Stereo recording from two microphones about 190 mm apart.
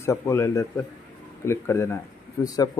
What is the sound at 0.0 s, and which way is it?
Speech, 15° left (ahead or behind).